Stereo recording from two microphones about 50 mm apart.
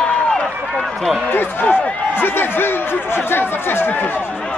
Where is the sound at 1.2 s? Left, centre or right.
Left.